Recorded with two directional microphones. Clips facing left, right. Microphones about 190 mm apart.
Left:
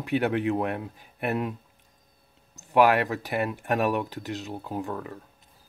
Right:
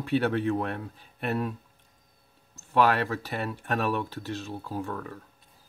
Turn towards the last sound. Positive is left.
turn(degrees=15)  # may be behind; listen again after turning